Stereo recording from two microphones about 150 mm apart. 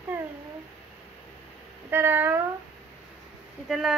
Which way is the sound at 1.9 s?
15° right (ahead or behind).